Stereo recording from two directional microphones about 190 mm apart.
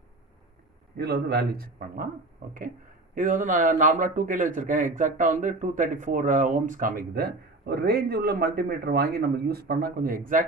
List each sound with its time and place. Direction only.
0.9 s a man's voice: 55° right (ahead or behind)
3.2 s a man's voice: 45° right (ahead or behind)